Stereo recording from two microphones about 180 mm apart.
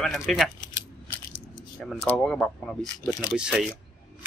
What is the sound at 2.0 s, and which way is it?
Speech, 5° left (ahead or behind).